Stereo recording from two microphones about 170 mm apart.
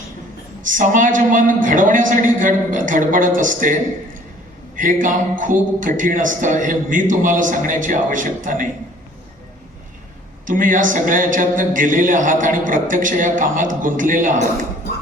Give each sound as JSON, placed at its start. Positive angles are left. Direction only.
{"t": 0.7, "sound": "a man's voice", "side_deg": -50}
{"t": 4.8, "sound": "a man's voice", "side_deg": -50}
{"t": 10.4, "sound": "a man's voice", "side_deg": -50}